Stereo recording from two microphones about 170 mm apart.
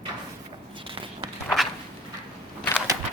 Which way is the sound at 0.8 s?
30° right (ahead or behind).